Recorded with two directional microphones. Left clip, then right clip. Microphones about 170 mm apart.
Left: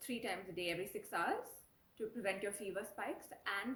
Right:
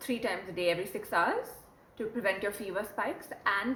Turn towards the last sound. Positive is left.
turn(degrees=-15)  # may be behind; listen again after turning